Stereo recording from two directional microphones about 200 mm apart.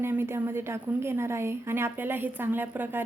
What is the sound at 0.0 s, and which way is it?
A woman's voice, 10° right (ahead or behind).